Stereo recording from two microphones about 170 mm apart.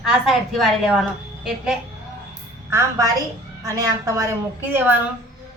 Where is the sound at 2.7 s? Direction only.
15° right (ahead or behind).